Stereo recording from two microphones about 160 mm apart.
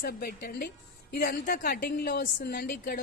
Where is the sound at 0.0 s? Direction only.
75° left (ahead or behind).